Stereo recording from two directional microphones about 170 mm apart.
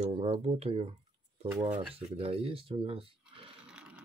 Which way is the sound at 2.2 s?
35° right (ahead or behind).